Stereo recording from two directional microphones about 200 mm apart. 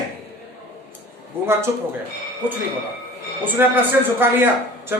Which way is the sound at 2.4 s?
10° right (ahead or behind).